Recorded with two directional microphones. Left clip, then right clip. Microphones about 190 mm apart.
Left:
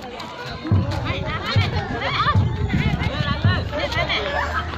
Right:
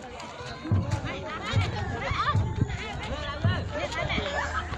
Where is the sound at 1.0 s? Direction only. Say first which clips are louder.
Left 8 dB; 35° left (ahead or behind).